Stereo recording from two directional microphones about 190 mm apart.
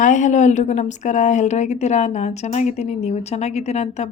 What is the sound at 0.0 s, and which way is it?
A woman's voice, 40° left (ahead or behind).